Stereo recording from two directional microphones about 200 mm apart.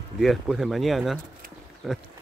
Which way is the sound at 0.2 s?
Centre (ahead or behind).